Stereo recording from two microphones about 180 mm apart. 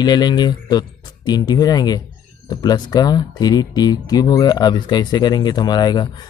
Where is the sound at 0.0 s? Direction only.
25° left (ahead or behind).